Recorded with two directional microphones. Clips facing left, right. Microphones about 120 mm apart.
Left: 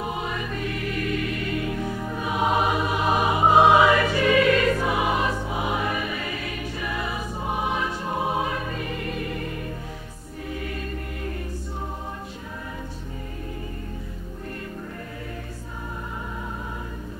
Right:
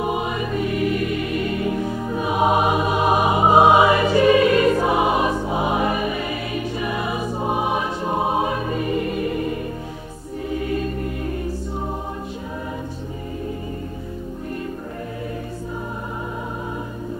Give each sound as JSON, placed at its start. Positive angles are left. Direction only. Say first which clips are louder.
{"t": 0.0, "sound": "choir", "louder": "right 6 dB", "side_deg": -20}
{"t": 2.2, "sound": "music", "louder": "right 4 dB", "side_deg": -20}